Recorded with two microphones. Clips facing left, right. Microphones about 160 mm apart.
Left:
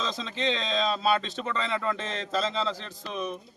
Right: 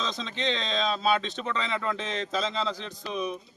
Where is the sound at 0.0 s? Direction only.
5° left (ahead or behind).